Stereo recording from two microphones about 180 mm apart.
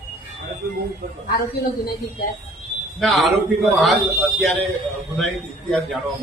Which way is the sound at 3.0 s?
Centre (ahead or behind).